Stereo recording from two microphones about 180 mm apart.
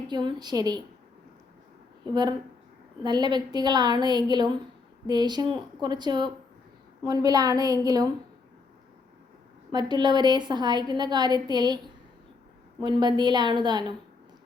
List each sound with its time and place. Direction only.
0.1 s a woman's voice: 25° right (ahead or behind)
3.0 s a woman's voice: 25° right (ahead or behind)
9.7 s a woman's voice: 25° right (ahead or behind)
12.8 s a woman's voice: 25° right (ahead or behind)